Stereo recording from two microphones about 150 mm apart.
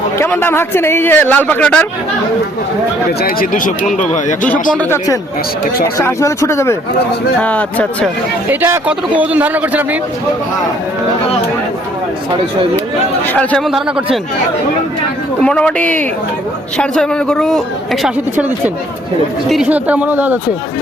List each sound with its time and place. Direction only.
0.2 s a man's voice: 15° left (ahead or behind)
3.2 s speech: 75° left (ahead or behind)
3.9 s speech: 55° left (ahead or behind)
6.0 s a man's voice: 20° left (ahead or behind)
8.4 s a man's voice: 15° right (ahead or behind)
13.7 s a man's voice: 5° right (ahead or behind)
15.4 s a man's voice: 5° left (ahead or behind)
18.0 s a man's voice: 10° right (ahead or behind)